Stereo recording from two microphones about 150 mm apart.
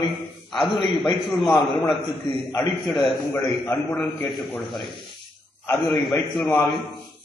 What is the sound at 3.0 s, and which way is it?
A man's voice, centre (ahead or behind).